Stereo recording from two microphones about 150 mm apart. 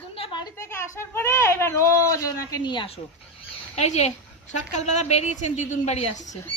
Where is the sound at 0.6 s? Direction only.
15° left (ahead or behind).